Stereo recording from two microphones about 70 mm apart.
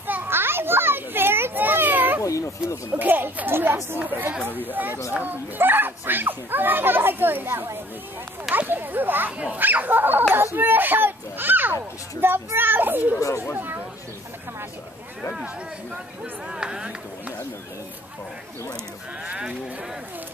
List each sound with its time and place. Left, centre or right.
0.0 s children playing: right
2.2 s a sound: left
3.0 s speech: right
10.3 s children playing: right
11.7 s a child's voice: right
13.6 s a sound: right
16.4 s speech: centre
19.2 s speech: centre